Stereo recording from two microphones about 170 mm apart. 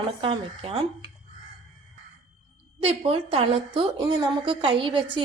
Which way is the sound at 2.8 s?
35° right (ahead or behind).